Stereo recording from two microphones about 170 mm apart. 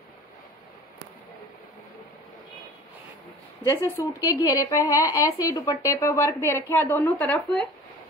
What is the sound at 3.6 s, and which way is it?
Speech, 15° left (ahead or behind).